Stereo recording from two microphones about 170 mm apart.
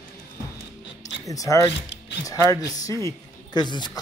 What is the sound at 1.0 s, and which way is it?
Speech, 20° left (ahead or behind).